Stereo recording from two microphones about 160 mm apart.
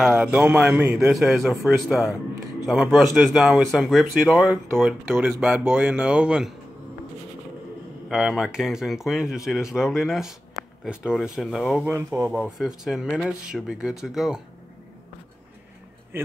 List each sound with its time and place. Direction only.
0.0 s a man's voice: 5° right (ahead or behind)
5.0 s a man's voice: 15° right (ahead or behind)
8.1 s a man's voice: centre (ahead or behind)
11.8 s speech: 15° right (ahead or behind)
12.3 s a man's voice: centre (ahead or behind)